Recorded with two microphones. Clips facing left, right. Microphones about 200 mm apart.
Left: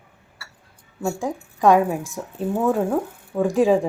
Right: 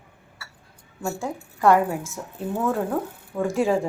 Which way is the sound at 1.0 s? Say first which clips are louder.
Left 4 dB; 15° left (ahead or behind).